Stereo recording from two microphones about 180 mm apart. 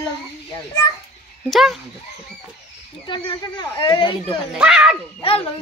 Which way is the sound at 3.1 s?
25° left (ahead or behind).